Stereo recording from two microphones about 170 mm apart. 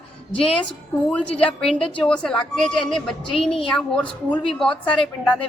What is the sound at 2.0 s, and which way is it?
Speech, 5° left (ahead or behind).